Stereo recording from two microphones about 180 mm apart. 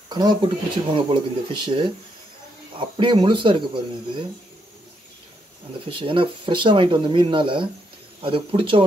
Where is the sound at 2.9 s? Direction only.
25° right (ahead or behind).